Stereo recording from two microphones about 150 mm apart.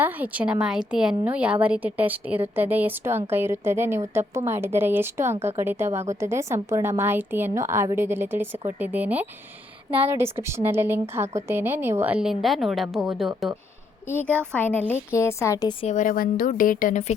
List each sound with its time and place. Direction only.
0.0 s a woman's voice: 10° right (ahead or behind)
14.1 s a woman's voice: 15° left (ahead or behind)
15.8 s a woman's voice: 55° left (ahead or behind)